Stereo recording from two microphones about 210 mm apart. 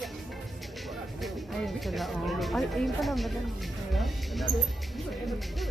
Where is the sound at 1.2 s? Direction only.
Centre (ahead or behind).